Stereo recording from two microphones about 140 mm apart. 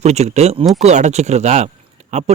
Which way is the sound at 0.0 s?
50° right (ahead or behind).